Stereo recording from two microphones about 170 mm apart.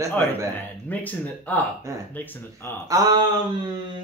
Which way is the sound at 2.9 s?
20° right (ahead or behind).